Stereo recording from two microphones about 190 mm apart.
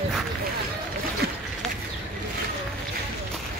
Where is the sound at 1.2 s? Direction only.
50° right (ahead or behind).